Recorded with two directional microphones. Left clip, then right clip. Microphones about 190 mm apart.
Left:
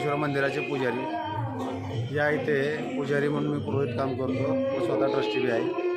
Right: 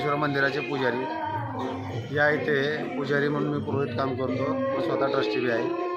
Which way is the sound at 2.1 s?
5° left (ahead or behind).